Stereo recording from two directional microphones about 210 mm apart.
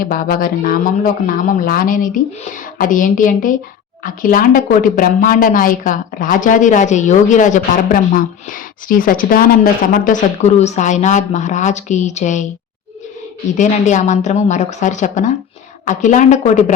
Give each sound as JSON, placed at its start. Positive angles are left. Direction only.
{"t": 0.0, "sound": "a woman's voice", "side_deg": 40}
{"t": 13.6, "sound": "a woman's voice", "side_deg": 35}